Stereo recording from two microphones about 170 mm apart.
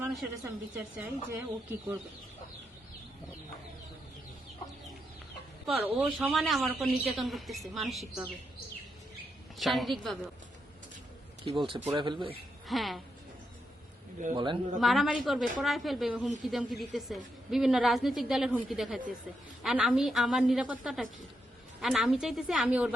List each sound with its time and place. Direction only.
0.4 s speech: 10° right (ahead or behind)
5.6 s a woman's voice: 5° right (ahead or behind)
9.6 s a woman's voice: centre (ahead or behind)
11.4 s speech: 30° right (ahead or behind)
12.6 s a woman's voice: centre (ahead or behind)
14.3 s speech: 30° right (ahead or behind)
14.8 s a woman's voice: centre (ahead or behind)